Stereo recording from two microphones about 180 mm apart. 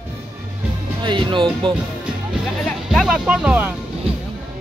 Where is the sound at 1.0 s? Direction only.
25° right (ahead or behind).